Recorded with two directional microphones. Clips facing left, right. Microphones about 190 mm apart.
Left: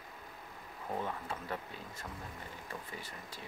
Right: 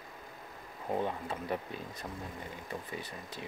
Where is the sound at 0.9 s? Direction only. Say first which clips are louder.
Right 5 dB; 20° right (ahead or behind).